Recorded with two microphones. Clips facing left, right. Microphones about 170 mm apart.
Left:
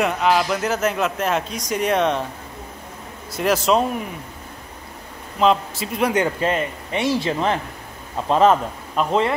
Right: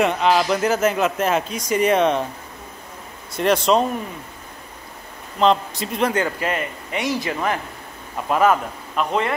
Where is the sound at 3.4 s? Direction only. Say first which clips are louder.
Right 1 dB; 5° left (ahead or behind).